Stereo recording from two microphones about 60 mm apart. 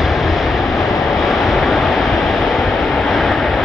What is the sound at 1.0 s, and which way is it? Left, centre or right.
Waves, centre.